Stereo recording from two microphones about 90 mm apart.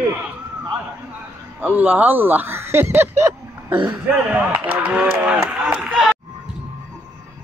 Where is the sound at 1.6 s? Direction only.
20° right (ahead or behind).